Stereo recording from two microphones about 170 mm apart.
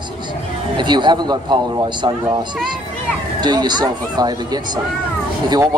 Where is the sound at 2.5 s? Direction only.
5° right (ahead or behind).